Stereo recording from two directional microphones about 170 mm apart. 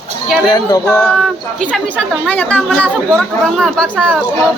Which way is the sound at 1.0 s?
Centre (ahead or behind).